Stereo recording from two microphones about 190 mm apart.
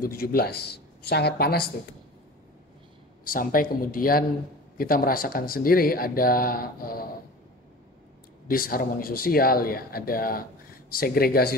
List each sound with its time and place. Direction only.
0.0 s speech: 50° left (ahead or behind)
3.3 s speech: 50° left (ahead or behind)
8.5 s speech: 50° left (ahead or behind)